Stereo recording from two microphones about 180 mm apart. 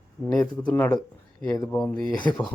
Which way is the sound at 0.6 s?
10° left (ahead or behind).